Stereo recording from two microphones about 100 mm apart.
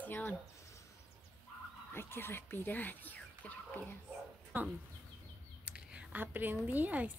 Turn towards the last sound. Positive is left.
turn(degrees=-15)  # may be behind; listen again after turning